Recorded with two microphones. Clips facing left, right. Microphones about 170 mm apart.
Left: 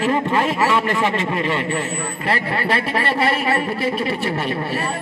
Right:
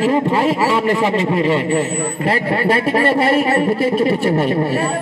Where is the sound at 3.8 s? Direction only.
45° right (ahead or behind).